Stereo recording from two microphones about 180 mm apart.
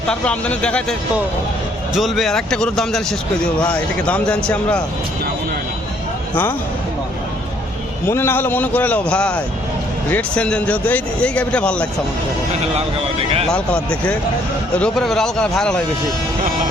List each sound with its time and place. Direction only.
0.1 s speech: 5° left (ahead or behind)
8.0 s speech: 15° left (ahead or behind)
13.5 s speech: 5° left (ahead or behind)